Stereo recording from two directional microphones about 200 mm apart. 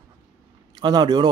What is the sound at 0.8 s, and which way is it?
Speech, 20° right (ahead or behind).